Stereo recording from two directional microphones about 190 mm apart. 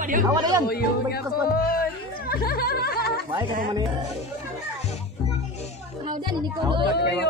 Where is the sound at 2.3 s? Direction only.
50° left (ahead or behind).